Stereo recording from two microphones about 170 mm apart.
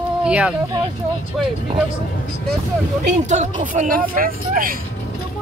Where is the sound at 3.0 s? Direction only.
45° right (ahead or behind).